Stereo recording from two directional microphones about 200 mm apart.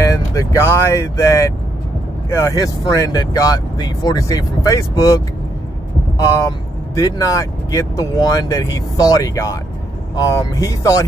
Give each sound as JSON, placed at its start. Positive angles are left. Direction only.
{"t": 0.0, "sound": "speech", "side_deg": 15}